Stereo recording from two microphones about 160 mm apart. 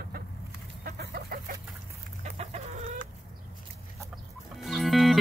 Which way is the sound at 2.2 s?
40° right (ahead or behind).